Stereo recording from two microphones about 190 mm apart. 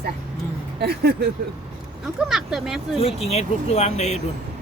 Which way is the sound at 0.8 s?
55° right (ahead or behind).